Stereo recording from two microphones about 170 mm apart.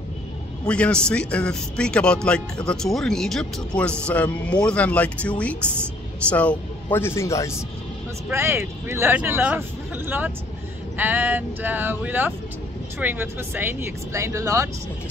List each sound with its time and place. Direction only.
0.7 s speech: 5° left (ahead or behind)
8.3 s speech: 15° right (ahead or behind)